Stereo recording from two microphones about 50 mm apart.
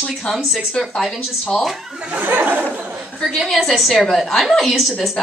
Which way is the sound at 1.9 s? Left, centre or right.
Centre.